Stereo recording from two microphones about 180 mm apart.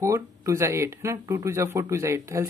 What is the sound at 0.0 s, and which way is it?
Speech, 15° right (ahead or behind).